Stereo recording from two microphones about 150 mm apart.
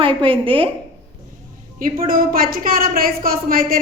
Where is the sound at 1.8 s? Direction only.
70° right (ahead or behind).